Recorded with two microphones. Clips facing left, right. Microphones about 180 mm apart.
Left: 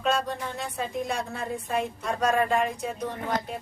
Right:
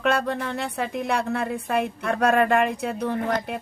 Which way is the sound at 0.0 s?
60° right (ahead or behind).